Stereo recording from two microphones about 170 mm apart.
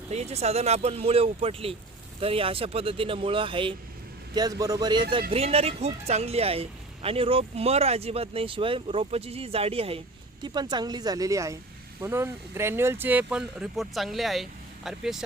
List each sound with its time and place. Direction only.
0.1 s speech: 40° right (ahead or behind)
5.3 s speech: 35° right (ahead or behind); by 15.2 s centre (ahead or behind)